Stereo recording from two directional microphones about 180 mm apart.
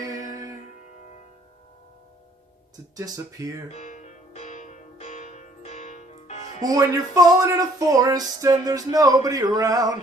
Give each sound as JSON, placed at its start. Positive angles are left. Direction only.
{"t": 0.2, "sound": "music", "side_deg": 45}
{"t": 3.0, "sound": "speech", "side_deg": -15}
{"t": 3.7, "sound": "music", "side_deg": 40}
{"t": 6.6, "sound": "speech", "side_deg": -20}